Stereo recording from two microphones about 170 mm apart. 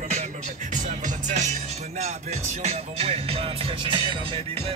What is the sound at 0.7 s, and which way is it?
Music, 45° right (ahead or behind).